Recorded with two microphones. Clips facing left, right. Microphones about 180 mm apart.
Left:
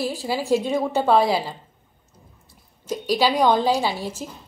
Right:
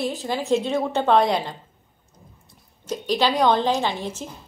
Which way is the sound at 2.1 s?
5° left (ahead or behind).